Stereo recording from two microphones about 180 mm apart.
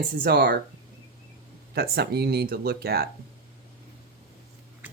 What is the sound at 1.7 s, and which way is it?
Speech, 60° right (ahead or behind).